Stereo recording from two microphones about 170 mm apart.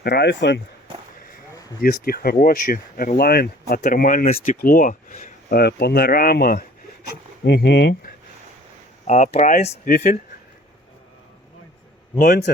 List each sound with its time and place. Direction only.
0.0 s speech: 70° left (ahead or behind); by 0.6 s 90° left
1.8 s speech: 60° left (ahead or behind)
3.8 s speech: 50° left (ahead or behind)
7.4 s speech: 80° left
9.0 s speech: 40° left (ahead or behind)
9.9 s speech: 55° left (ahead or behind)